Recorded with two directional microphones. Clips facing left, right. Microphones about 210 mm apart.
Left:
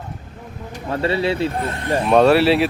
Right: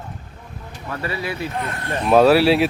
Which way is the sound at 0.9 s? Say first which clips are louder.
Left 7 dB; 25° left (ahead or behind).